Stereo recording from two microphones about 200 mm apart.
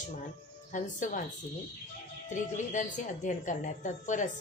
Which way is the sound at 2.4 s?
40° left (ahead or behind).